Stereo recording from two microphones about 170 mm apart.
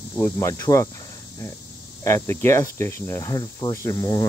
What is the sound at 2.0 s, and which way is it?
Speech, 15° left (ahead or behind).